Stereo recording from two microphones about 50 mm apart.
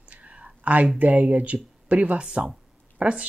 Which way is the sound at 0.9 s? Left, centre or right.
Right.